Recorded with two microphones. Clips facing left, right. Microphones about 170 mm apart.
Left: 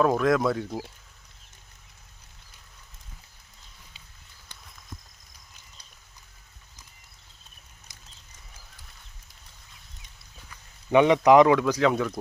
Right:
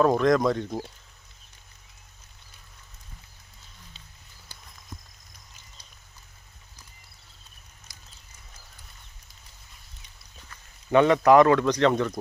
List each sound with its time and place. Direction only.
0.0 s speech: 5° left (ahead or behind)
7.9 s a sound: 20° left (ahead or behind)
10.9 s speech: 15° left (ahead or behind)